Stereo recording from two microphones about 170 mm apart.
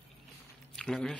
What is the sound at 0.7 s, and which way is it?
Speech, centre (ahead or behind).